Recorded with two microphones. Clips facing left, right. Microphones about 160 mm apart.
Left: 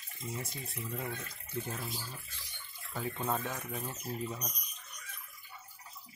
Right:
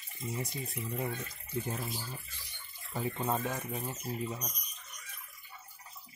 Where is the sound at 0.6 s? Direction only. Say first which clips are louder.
Right 3 dB; 20° right (ahead or behind).